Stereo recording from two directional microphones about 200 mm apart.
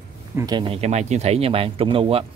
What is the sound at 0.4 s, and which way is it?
Speech, 20° right (ahead or behind).